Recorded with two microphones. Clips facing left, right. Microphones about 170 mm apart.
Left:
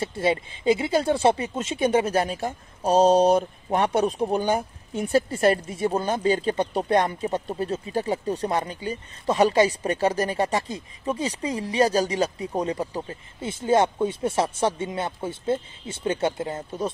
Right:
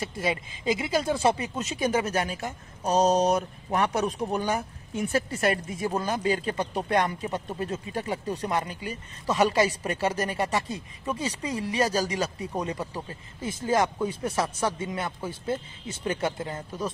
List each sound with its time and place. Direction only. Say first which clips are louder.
0.0 s speech: left 5 dB; 30° left (ahead or behind)